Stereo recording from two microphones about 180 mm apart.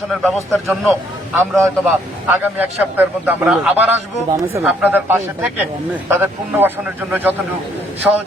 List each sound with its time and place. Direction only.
0.1 s a man's voice: centre (ahead or behind)
1.4 s a man's voice: 15° right (ahead or behind)